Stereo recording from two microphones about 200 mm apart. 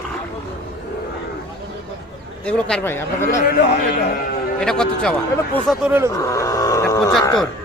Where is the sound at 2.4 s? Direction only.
10° left (ahead or behind).